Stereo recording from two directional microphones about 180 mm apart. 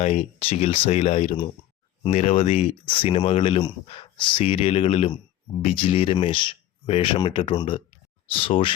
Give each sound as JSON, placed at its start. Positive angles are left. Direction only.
{"t": 0.0, "sound": "speech", "side_deg": 40}